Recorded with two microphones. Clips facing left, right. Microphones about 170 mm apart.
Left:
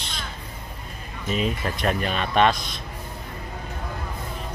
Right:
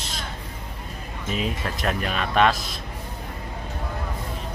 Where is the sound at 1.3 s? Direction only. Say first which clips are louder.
Left 2 dB; centre (ahead or behind).